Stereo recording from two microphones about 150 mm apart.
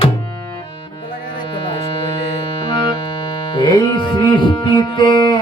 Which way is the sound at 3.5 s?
30° left (ahead or behind).